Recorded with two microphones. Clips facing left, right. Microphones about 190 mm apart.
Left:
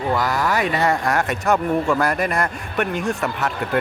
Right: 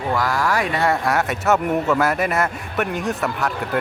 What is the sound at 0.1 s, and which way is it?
A man's voice, centre (ahead or behind).